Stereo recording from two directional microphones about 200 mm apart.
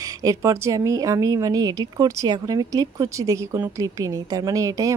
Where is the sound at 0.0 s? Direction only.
15° right (ahead or behind).